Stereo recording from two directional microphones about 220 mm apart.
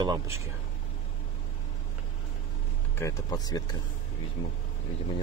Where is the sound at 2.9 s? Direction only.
15° left (ahead or behind).